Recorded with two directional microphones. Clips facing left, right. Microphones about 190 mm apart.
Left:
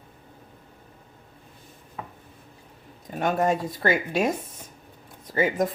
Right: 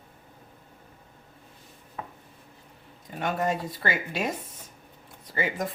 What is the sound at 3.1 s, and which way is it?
Speech, 45° left (ahead or behind).